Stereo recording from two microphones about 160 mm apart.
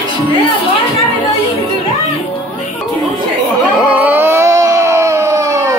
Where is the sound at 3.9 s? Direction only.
10° right (ahead or behind).